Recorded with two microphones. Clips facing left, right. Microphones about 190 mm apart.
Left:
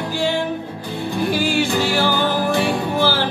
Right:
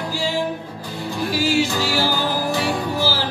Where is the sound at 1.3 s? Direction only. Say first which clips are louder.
Right 1 dB; 55° left (ahead or behind).